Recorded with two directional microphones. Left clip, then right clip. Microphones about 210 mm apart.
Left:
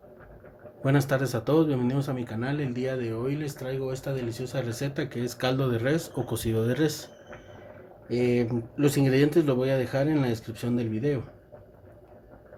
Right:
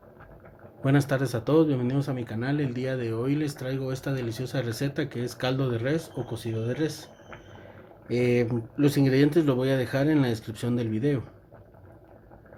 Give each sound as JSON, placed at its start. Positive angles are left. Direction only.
{"t": 0.8, "sound": "speech", "side_deg": -5}
{"t": 6.3, "sound": "speech", "side_deg": 20}
{"t": 8.0, "sound": "speech", "side_deg": -15}